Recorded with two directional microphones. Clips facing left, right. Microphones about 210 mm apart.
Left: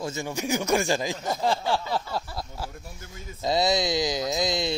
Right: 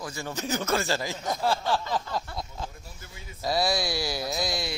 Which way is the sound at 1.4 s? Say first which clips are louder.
Left 1 dB; 15° left (ahead or behind).